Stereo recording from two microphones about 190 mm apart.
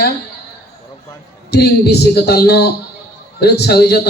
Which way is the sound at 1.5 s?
60° left (ahead or behind).